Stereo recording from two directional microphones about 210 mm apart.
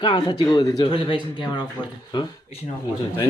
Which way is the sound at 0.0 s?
20° left (ahead or behind).